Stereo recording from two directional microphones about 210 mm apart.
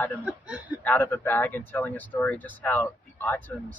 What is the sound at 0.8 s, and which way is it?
Speech, 10° left (ahead or behind).